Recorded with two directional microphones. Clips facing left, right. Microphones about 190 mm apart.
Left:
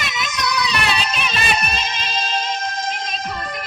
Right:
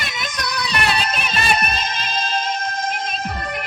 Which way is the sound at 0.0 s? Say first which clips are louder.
Left 3 dB; 50° right (ahead or behind).